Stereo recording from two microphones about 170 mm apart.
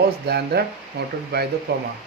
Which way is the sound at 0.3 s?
70° right (ahead or behind).